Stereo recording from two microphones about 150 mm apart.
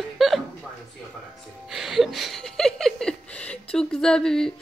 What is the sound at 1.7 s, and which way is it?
Speech, centre (ahead or behind).